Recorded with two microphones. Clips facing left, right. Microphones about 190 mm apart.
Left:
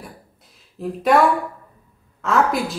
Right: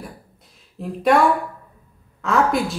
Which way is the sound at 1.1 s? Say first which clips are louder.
Even; centre (ahead or behind).